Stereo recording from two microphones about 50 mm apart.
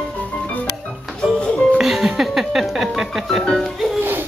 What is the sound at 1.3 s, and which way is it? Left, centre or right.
Music, centre.